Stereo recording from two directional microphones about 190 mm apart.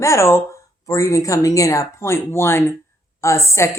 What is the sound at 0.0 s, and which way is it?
A woman's voice, 15° left (ahead or behind).